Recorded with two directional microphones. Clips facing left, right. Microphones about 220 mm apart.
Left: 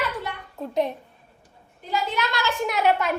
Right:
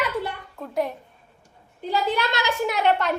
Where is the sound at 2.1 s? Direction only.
30° right (ahead or behind).